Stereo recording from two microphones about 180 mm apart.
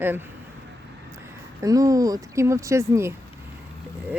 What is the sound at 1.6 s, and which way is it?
Speech, 20° right (ahead or behind).